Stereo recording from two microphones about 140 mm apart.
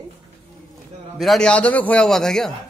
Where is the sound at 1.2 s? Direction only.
5° left (ahead or behind).